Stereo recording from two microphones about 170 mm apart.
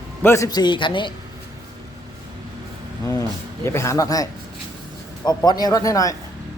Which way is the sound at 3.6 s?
15° left (ahead or behind).